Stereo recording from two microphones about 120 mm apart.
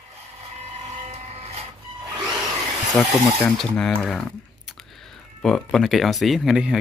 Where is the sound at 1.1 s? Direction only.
55° right (ahead or behind).